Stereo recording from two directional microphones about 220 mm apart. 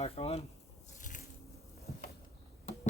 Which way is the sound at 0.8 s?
35° left (ahead or behind).